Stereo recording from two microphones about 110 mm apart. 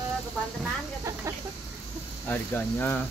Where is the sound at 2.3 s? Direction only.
20° left (ahead or behind).